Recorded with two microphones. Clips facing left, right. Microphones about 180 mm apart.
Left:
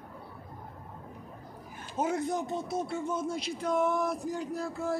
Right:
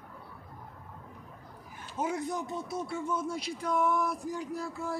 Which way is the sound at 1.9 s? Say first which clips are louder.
Left 3 dB; 45° left (ahead or behind).